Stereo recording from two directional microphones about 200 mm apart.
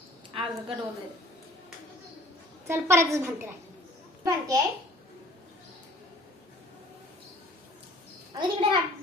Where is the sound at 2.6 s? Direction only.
15° right (ahead or behind).